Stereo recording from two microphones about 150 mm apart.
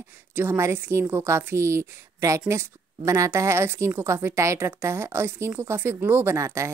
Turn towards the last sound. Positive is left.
turn(degrees=-20)  # may be behind; listen again after turning